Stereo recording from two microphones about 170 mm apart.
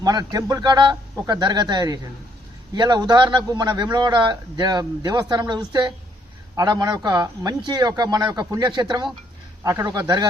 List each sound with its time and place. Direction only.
0.0 s a man's voice: 25° right (ahead or behind)